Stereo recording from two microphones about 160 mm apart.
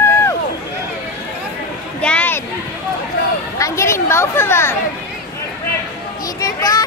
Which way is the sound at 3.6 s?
15° left (ahead or behind).